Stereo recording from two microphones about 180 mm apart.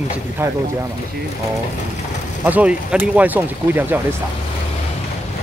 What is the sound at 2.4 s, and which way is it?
Speech, 10° right (ahead or behind).